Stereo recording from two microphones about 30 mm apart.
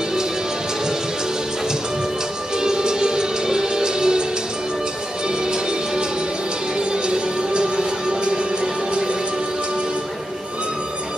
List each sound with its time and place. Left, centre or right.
2.5 s music: right
5.4 s music: right